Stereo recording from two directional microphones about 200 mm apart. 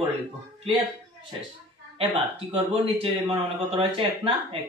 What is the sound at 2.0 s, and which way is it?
Speech, 30° right (ahead or behind).